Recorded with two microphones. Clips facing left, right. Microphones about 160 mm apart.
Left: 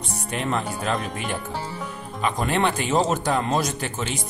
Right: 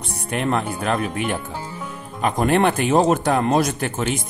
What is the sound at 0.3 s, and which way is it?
Speech, 55° right (ahead or behind).